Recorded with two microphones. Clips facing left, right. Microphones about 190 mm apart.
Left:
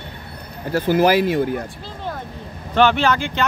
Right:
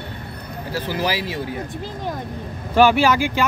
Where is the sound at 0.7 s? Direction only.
50° left (ahead or behind).